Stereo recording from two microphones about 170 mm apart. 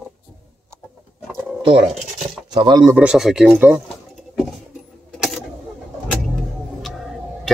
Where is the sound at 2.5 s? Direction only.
25° right (ahead or behind).